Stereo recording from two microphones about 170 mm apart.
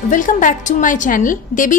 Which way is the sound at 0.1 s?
50° left (ahead or behind).